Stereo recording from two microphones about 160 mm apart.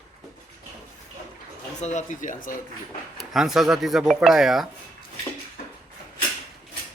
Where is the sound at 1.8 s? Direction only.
50° left (ahead or behind).